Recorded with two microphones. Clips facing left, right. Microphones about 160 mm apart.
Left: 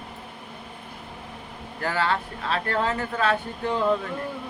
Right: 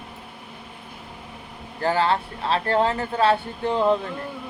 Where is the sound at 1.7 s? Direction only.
30° right (ahead or behind).